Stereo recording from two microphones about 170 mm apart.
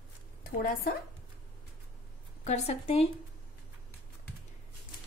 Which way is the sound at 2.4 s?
40° left (ahead or behind).